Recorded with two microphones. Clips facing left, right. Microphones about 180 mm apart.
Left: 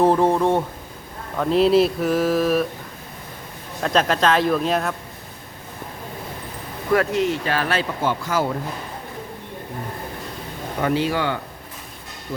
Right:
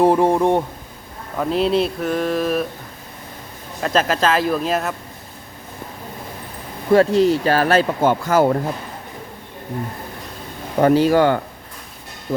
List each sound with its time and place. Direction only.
0.0 s speech: 15° right (ahead or behind)
1.4 s speech: centre (ahead or behind)
3.8 s speech: centre (ahead or behind)
6.9 s speech: 30° right (ahead or behind); by 8.5 s 50° right (ahead or behind)
10.8 s speech: 40° right (ahead or behind)